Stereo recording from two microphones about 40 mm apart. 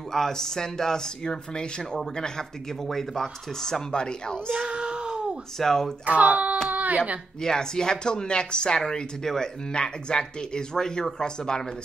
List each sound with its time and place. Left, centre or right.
0.1 s speech: centre
4.6 s a sound: right
5.6 s speech: centre
6.0 s a child's voice: right
6.7 s a sound: right
7.4 s speech: centre